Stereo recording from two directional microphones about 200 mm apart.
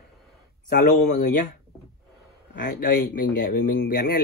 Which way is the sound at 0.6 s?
40° left (ahead or behind).